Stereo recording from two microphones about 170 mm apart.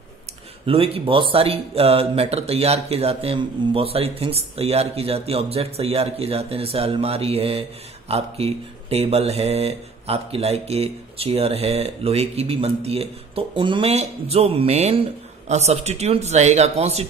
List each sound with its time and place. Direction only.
0.7 s speech: 35° right (ahead or behind)